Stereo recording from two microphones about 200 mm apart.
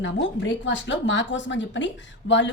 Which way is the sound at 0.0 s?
70° left (ahead or behind).